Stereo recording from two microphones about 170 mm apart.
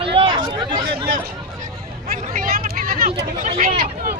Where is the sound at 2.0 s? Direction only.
55° right (ahead or behind).